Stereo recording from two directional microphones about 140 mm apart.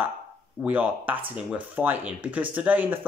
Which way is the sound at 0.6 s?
10° right (ahead or behind).